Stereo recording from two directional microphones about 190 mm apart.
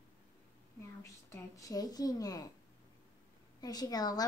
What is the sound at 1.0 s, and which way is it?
A woman's voice, 15° left (ahead or behind).